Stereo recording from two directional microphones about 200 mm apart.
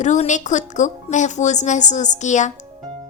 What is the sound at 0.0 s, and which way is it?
A woman's voice, 35° left (ahead or behind).